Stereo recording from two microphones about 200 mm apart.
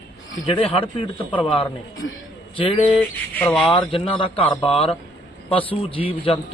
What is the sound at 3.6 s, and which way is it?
A man's voice, 25° left (ahead or behind).